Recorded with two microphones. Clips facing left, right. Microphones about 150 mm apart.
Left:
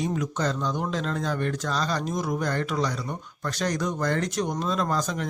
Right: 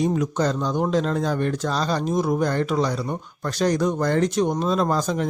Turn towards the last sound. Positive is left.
turn(degrees=-30)  # may be behind; listen again after turning